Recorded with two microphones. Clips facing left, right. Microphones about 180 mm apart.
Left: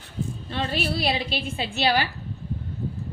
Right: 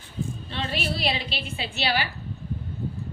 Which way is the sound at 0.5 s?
45° left (ahead or behind).